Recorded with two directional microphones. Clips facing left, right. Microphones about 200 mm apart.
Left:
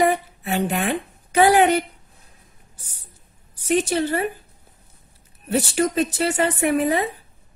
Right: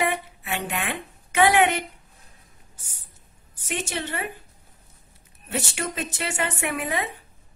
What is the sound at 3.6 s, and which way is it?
Speech, 35° left (ahead or behind).